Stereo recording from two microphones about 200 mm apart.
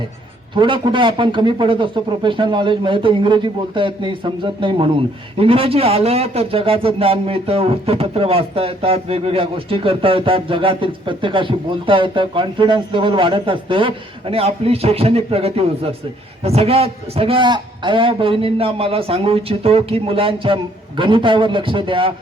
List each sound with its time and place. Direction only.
0.5 s speech: 25° right (ahead or behind)